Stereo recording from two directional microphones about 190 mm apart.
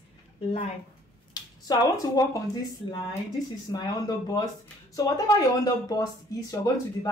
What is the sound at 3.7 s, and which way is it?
Speech, 20° left (ahead or behind).